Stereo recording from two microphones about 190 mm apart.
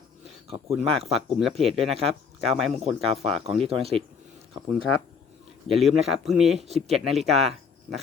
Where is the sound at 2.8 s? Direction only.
30° right (ahead or behind).